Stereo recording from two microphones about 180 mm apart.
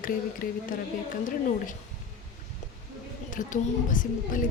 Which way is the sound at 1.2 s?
45° left (ahead or behind).